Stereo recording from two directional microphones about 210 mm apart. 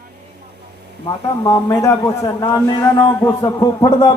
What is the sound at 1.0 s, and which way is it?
A man's voice, 20° left (ahead or behind).